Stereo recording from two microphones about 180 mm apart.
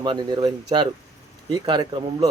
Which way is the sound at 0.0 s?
25° right (ahead or behind).